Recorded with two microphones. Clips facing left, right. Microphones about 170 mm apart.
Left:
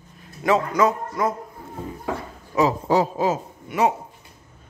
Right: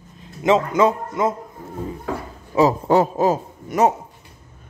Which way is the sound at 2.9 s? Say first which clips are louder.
Right 3 dB; 55° right (ahead or behind).